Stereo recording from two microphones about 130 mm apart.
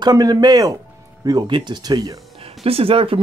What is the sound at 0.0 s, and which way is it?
Speech, 30° right (ahead or behind).